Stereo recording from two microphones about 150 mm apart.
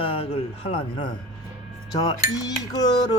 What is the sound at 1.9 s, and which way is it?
Dishes, 25° left (ahead or behind).